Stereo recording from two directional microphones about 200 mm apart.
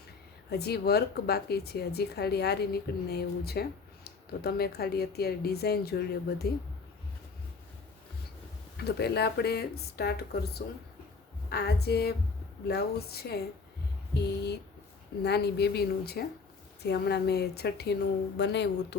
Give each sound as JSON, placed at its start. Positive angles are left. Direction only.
{"t": 0.5, "sound": "speech", "side_deg": 55}
{"t": 8.8, "sound": "speech", "side_deg": 55}